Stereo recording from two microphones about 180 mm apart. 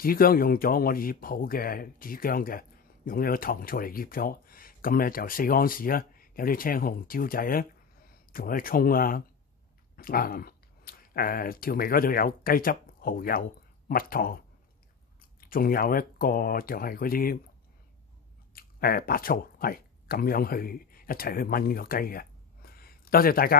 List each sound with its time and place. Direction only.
0.0 s speech: 55° left (ahead or behind)
15.4 s speech: 55° left (ahead or behind)
18.5 s speech: 55° left (ahead or behind)